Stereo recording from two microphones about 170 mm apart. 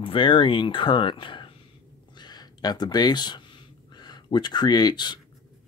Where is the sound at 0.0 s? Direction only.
30° left (ahead or behind).